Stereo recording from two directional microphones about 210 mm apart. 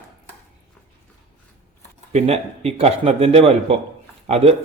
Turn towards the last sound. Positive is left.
turn(degrees=-30)  # may be behind; listen again after turning